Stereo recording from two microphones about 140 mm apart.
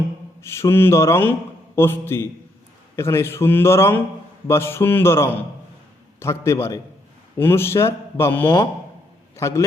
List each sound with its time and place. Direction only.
0.4 s a man's voice: 20° left (ahead or behind)